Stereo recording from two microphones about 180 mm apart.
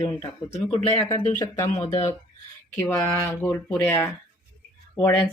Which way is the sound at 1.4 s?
15° left (ahead or behind).